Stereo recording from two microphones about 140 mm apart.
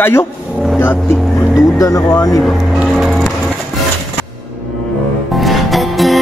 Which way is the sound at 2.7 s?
Centre (ahead or behind).